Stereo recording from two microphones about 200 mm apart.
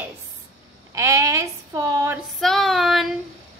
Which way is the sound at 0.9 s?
15° right (ahead or behind).